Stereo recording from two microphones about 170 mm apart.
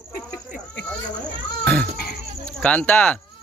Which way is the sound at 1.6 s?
5° left (ahead or behind).